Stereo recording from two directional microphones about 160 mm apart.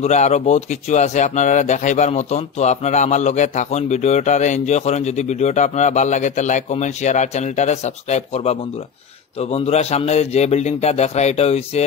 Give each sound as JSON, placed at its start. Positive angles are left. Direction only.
{"t": 0.0, "sound": "a man's voice", "side_deg": 45}